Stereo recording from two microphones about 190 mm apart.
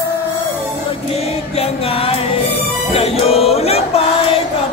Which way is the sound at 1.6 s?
30° left (ahead or behind).